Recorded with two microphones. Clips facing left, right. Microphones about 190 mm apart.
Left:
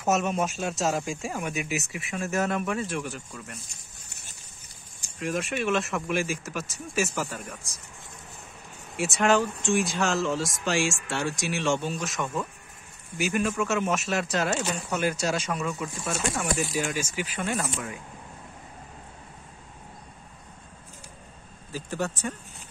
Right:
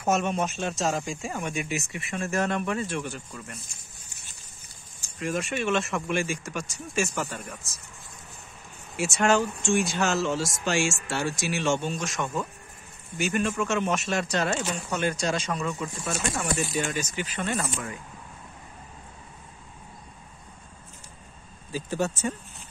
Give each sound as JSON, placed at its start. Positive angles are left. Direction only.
{"t": 0.0, "sound": "speech", "side_deg": 0}
{"t": 5.2, "sound": "speech", "side_deg": 0}
{"t": 8.9, "sound": "speech", "side_deg": 0}
{"t": 21.7, "sound": "speech", "side_deg": -15}